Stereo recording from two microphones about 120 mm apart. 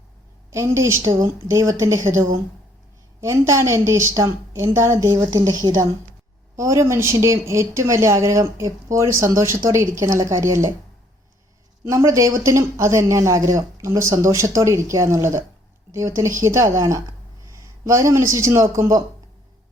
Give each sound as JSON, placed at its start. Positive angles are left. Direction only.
{"t": 0.5, "sound": "speech", "side_deg": -25}
{"t": 11.9, "sound": "speech", "side_deg": -25}